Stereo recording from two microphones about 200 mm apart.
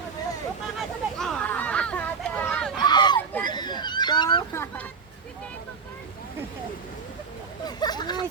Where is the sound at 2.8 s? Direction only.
20° left (ahead or behind).